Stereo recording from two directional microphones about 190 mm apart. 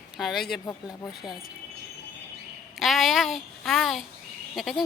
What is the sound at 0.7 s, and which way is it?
Speech, 15° left (ahead or behind).